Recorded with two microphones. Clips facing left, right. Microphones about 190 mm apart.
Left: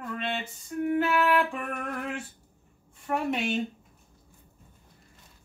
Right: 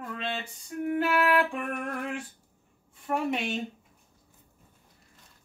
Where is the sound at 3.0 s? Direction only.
Centre (ahead or behind).